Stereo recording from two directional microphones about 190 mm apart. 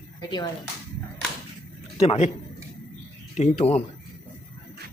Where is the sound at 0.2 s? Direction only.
20° left (ahead or behind).